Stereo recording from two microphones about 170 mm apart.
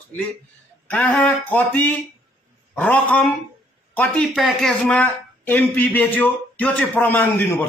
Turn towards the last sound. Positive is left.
turn(degrees=10)  # may be behind; listen again after turning